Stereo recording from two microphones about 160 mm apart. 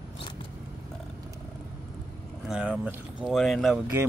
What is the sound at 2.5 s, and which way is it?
Speech, 5° right (ahead or behind).